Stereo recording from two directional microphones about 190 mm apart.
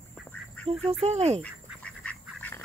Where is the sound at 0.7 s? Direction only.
30° right (ahead or behind).